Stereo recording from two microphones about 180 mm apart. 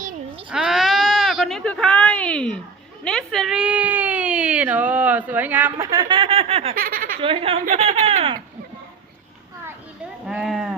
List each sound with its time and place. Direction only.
0.5 s sheep: 5° right (ahead or behind)
3.0 s a sound: 5° left (ahead or behind)
5.8 s a sound: 20° right (ahead or behind)
6.7 s snicker: 50° right (ahead or behind)
7.2 s speech: 30° right (ahead or behind)
10.2 s speech: centre (ahead or behind)